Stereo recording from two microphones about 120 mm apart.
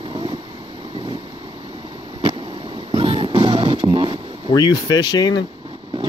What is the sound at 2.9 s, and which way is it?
Music, 45° right (ahead or behind).